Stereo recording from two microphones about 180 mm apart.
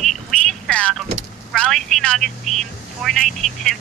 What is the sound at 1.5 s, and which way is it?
Speech, 5° left (ahead or behind).